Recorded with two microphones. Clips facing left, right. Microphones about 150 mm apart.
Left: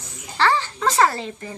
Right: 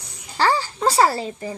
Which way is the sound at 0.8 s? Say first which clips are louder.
Right 2 dB; 35° right (ahead or behind).